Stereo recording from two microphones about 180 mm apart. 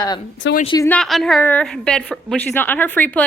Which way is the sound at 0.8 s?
5° left (ahead or behind).